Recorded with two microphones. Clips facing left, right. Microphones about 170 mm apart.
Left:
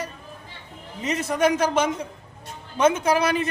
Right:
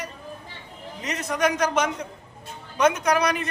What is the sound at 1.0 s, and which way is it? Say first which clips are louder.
A man's voice: left 3 dB; 30° left (ahead or behind).